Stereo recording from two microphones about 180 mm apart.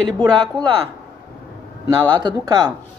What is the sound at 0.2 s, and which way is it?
Speech, 25° right (ahead or behind).